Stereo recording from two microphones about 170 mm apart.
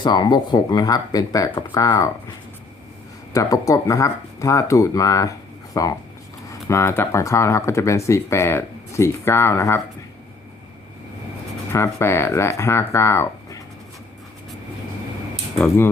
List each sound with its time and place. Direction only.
0.0 s speech: 25° left (ahead or behind)
3.3 s speech: 20° left (ahead or behind)
11.7 s speech: 15° left (ahead or behind)